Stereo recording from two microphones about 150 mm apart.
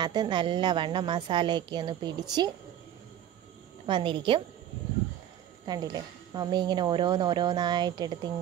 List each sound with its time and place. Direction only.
0.0 s speech: 30° right (ahead or behind)
3.8 s speech: 35° right (ahead or behind)
5.7 s speech: 25° right (ahead or behind)